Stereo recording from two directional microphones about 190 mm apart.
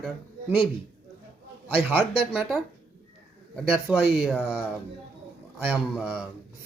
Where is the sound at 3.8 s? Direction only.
Centre (ahead or behind).